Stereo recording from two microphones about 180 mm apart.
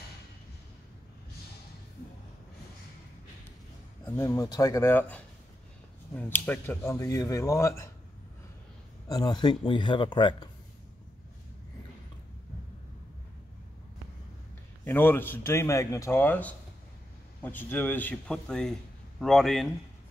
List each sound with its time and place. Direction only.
4.0 s speech: 15° left (ahead or behind)
9.1 s speech: 20° left (ahead or behind)
14.9 s speech: 10° left (ahead or behind)